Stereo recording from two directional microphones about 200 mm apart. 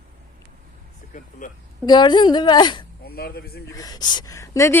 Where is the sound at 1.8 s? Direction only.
20° left (ahead or behind).